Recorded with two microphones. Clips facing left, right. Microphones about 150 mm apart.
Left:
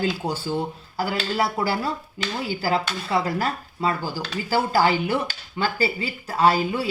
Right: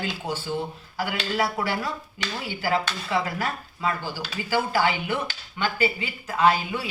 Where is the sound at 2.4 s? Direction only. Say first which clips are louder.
Left 1 dB; 35° left (ahead or behind).